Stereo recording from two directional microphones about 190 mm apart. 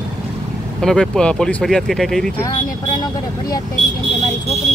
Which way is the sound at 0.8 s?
5° left (ahead or behind).